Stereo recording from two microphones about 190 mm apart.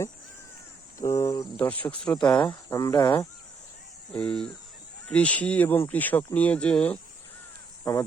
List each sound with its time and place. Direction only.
0.9 s speech: 15° left (ahead or behind)
2.4 s speech: 20° left (ahead or behind)
4.1 s speech: 5° left (ahead or behind)